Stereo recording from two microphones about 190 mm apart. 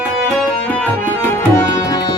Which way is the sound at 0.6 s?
10° left (ahead or behind).